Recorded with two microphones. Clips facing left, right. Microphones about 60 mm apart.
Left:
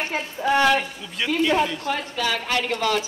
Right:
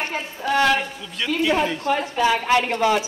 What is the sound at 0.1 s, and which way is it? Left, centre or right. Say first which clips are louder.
A man's voice: left 4 dB; centre.